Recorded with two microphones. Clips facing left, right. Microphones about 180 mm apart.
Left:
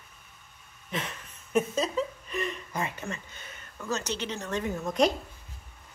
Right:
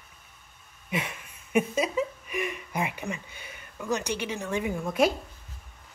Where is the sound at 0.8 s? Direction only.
10° right (ahead or behind).